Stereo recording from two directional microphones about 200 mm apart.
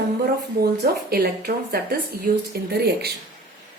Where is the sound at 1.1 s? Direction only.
50° right (ahead or behind).